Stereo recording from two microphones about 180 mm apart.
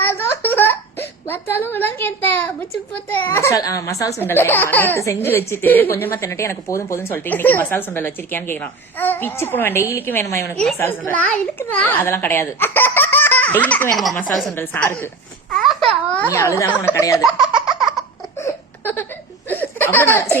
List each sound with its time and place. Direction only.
0.0 s a sound: 10° left (ahead or behind)
4.2 s a woman's voice: 10° left (ahead or behind)
16.3 s speech: 15° left (ahead or behind)
17.7 s laughter: centre (ahead or behind)
18.3 s crying: 15° left (ahead or behind)
19.5 s a sound: 10° left (ahead or behind)